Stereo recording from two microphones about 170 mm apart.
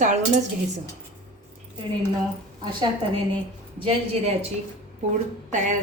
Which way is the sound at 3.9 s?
35° right (ahead or behind).